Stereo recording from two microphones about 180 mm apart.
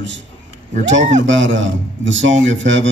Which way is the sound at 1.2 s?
90° right.